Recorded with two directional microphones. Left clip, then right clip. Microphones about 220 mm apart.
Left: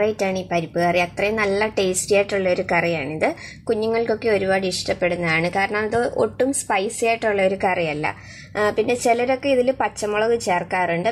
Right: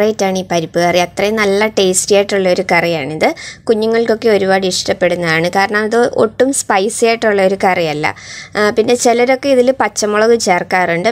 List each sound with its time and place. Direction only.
0.0 s a woman's voice: 35° right (ahead or behind)